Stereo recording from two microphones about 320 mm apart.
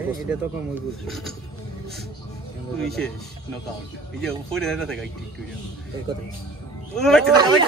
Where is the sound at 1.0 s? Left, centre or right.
Centre.